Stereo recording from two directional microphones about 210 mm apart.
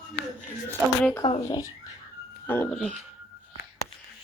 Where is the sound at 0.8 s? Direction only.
10° right (ahead or behind).